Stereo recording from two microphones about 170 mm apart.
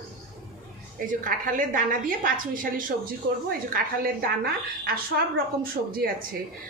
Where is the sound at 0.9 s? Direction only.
50° right (ahead or behind).